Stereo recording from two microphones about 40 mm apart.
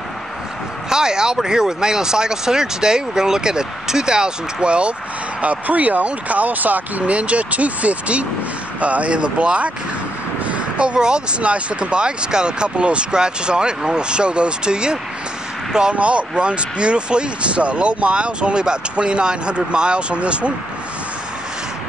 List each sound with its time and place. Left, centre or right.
0.8 s speech: centre
5.4 s speech: right
7.1 s speech: right